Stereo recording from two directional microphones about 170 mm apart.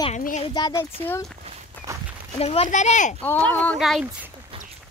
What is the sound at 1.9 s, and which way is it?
Walk, 20° right (ahead or behind).